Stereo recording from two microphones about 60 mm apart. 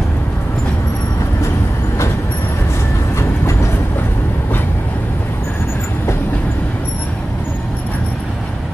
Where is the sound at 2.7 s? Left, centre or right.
Left.